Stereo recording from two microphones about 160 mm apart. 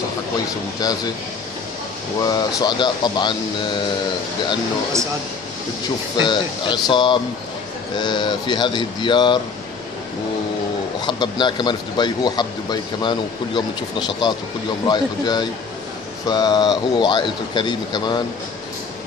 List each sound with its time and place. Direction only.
0.7 s speech: 25° left (ahead or behind)
2.2 s speech: 25° left (ahead or behind)
6.1 s speech: 30° left (ahead or behind)
11.1 s speech: 30° left (ahead or behind)